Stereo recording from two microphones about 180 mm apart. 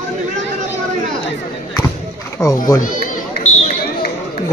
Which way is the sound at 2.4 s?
15° left (ahead or behind).